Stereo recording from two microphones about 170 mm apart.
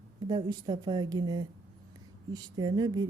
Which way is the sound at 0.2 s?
25° right (ahead or behind).